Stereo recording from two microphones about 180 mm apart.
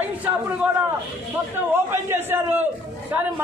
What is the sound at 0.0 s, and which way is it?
Speech, 10° right (ahead or behind).